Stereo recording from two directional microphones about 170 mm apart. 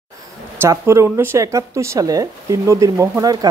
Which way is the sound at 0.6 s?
15° right (ahead or behind).